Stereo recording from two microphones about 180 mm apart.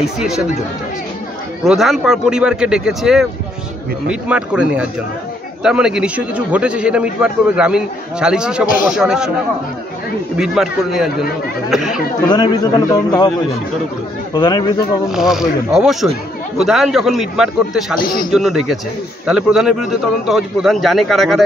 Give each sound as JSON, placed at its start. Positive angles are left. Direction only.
{"t": 0.0, "sound": "a man's voice", "side_deg": -5}
{"t": 1.6, "sound": "a man's voice", "side_deg": 0}
{"t": 10.3, "sound": "a man's voice", "side_deg": -5}
{"t": 12.3, "sound": "a man's voice", "side_deg": 20}
{"t": 14.3, "sound": "a man's voice", "side_deg": 25}
{"t": 15.0, "sound": "a man's voice", "side_deg": 0}